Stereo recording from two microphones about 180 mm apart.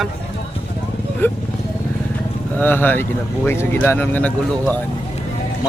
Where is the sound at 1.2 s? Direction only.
10° left (ahead or behind).